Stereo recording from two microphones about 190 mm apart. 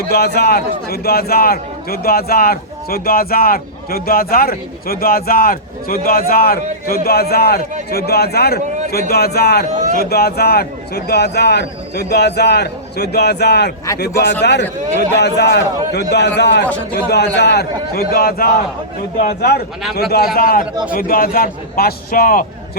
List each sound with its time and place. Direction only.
0.1 s a man's voice: 55° left (ahead or behind)